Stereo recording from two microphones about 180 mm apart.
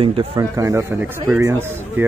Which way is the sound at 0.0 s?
30° right (ahead or behind).